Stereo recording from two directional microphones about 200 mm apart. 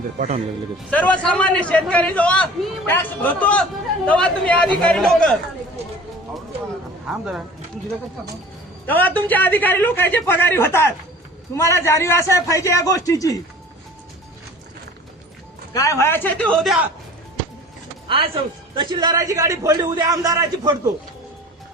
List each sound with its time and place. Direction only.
0.2 s speech: 35° right (ahead or behind)
0.9 s a man's voice: 5° left (ahead or behind)
7.1 s speech: 5° right (ahead or behind)
8.9 s a man's voice: 10° left (ahead or behind)
15.7 s a man's voice: 15° left (ahead or behind)
18.7 s a man's voice: 25° right (ahead or behind)